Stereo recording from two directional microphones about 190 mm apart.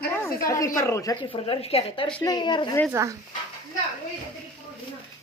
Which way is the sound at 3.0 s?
15° right (ahead or behind).